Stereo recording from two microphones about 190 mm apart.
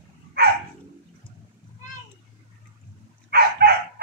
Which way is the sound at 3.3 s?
55° right (ahead or behind).